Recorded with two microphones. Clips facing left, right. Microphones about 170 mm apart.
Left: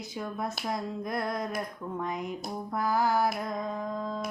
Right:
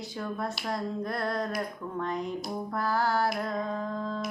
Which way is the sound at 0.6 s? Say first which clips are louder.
Right 2 dB; 15° left (ahead or behind).